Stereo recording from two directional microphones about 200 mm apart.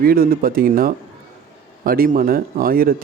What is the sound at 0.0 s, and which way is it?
A man's voice, 45° right (ahead or behind).